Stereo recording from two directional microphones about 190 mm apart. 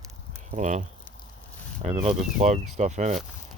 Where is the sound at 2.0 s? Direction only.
35° right (ahead or behind).